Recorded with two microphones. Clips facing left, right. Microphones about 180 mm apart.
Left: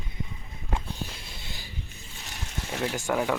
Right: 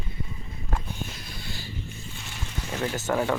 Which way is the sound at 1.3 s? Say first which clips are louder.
Right 5 dB; 20° left (ahead or behind).